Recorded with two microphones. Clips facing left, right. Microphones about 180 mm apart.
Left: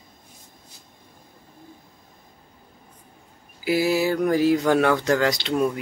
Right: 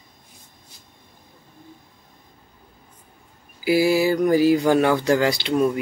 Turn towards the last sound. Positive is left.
turn(degrees=0)  # may be behind; listen again after turning